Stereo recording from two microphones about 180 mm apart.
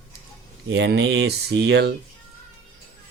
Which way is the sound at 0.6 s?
70° right (ahead or behind).